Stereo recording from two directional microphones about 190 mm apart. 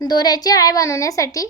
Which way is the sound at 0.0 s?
20° left (ahead or behind).